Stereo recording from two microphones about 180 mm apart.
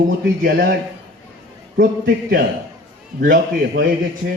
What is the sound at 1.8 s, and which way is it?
A man's voice, 55° right (ahead or behind).